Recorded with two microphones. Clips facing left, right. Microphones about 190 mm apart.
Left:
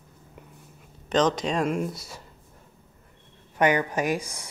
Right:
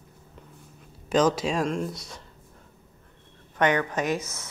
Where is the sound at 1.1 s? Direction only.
10° right (ahead or behind).